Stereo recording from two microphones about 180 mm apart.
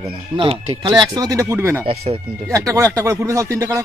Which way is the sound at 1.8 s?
30° right (ahead or behind).